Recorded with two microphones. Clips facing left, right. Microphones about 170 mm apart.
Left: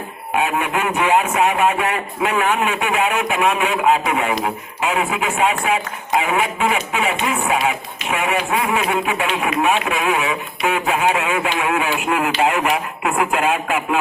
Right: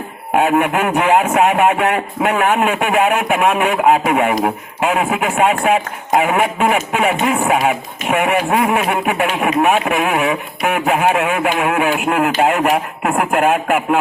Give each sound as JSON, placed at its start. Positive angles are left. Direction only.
{"t": 0.3, "sound": "speech", "side_deg": -55}